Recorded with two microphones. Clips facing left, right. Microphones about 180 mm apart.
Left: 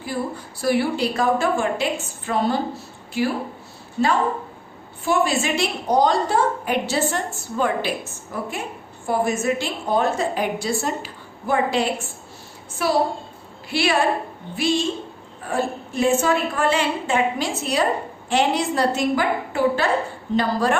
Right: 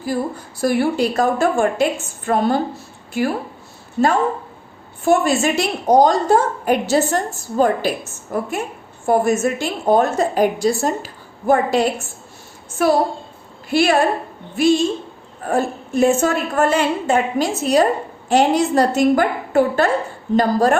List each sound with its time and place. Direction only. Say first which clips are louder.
0.0 s a woman's voice: right 4 dB; 45° right (ahead or behind)
15.4 s a woman's voice: right 4 dB; 45° right (ahead or behind)